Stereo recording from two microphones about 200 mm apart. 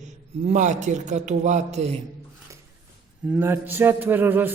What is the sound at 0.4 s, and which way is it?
A man's voice, 35° right (ahead or behind).